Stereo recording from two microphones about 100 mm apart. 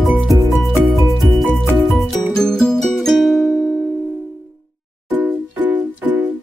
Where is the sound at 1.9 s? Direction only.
5° left (ahead or behind).